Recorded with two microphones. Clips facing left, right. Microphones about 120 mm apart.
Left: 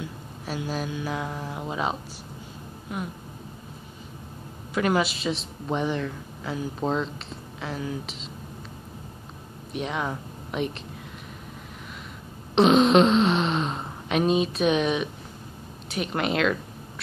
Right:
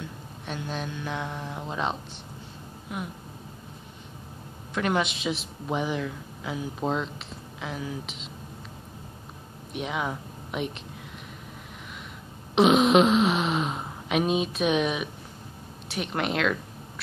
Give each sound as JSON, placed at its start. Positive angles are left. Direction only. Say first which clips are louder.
{"t": 0.0, "sound": "a woman's voice", "louder": "left 3 dB", "side_deg": 5}
{"t": 4.7, "sound": "a woman's voice", "louder": "left 3 dB", "side_deg": 0}
{"t": 9.7, "sound": "speech", "louder": "left 1 dB", "side_deg": 0}
{"t": 12.5, "sound": "a woman's voice", "louder": "left 1 dB", "side_deg": -5}